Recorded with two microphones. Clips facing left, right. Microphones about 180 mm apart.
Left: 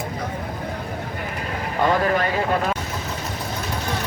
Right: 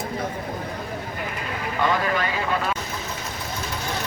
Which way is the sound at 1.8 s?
45° left (ahead or behind).